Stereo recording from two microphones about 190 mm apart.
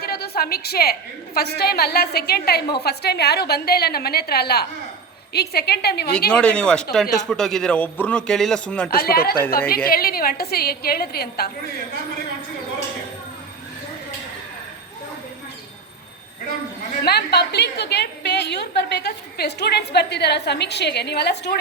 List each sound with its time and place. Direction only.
0.0 s a woman's voice: 55° left (ahead or behind)
6.1 s a man's voice: 5° left (ahead or behind)
8.9 s a woman's voice: 50° left (ahead or behind)
17.0 s a woman's voice: 60° left (ahead or behind)